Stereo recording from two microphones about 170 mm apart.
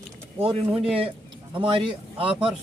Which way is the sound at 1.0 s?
30° right (ahead or behind).